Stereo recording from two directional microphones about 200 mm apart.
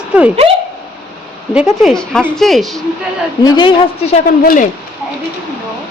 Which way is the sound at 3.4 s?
25° left (ahead or behind).